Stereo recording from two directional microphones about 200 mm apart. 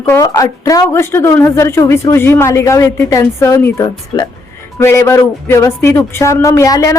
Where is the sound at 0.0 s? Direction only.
15° left (ahead or behind).